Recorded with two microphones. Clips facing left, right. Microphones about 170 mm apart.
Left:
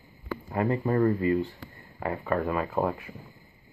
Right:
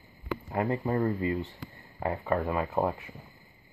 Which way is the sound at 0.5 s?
15° right (ahead or behind).